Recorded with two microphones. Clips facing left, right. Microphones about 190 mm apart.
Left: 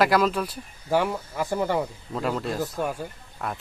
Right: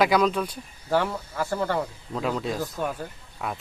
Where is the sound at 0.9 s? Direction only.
15° left (ahead or behind).